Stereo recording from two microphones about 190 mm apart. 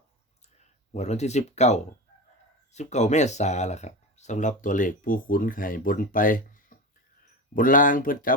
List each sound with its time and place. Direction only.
0.9 s speech: 35° left (ahead or behind)